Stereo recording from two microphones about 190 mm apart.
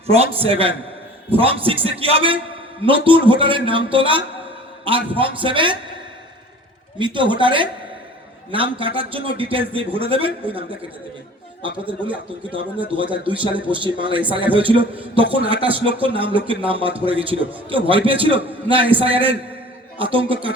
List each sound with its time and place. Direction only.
0.1 s a man's voice: 30° right (ahead or behind)
7.0 s a man's voice: 25° right (ahead or behind)
12.8 s a man's voice: 25° right (ahead or behind)